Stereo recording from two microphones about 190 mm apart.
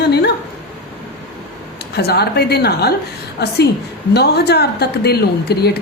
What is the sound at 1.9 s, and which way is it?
A woman's voice, 55° left (ahead or behind).